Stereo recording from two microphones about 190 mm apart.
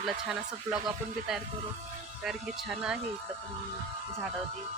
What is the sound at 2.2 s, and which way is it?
Speech, 5° right (ahead or behind).